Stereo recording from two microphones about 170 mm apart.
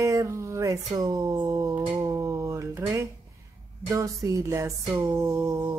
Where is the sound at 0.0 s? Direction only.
20° right (ahead or behind).